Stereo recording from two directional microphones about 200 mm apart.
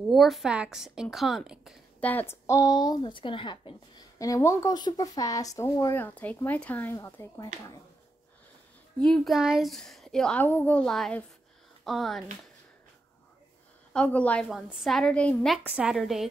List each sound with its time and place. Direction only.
0.1 s a woman's voice: centre (ahead or behind)
2.0 s speech: 10° left (ahead or behind)
9.0 s a woman's voice: centre (ahead or behind)
13.9 s a woman's voice: 5° left (ahead or behind)